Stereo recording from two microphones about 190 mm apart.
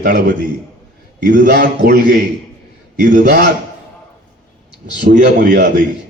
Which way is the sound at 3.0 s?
45° right (ahead or behind).